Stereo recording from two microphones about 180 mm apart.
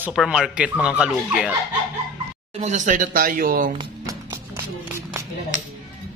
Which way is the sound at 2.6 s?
40° right (ahead or behind).